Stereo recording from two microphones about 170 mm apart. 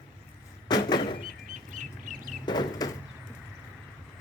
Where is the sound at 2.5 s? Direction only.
25° left (ahead or behind).